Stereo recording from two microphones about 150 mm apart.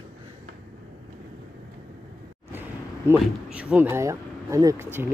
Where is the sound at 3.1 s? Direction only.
5° right (ahead or behind).